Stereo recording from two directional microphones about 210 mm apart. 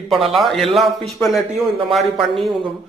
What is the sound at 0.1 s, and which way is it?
Speech, centre (ahead or behind).